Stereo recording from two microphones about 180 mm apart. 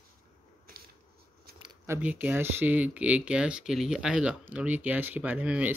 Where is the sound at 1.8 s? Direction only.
10° right (ahead or behind).